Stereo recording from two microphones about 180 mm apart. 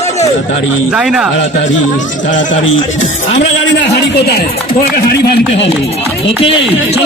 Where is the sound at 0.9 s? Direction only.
5° right (ahead or behind).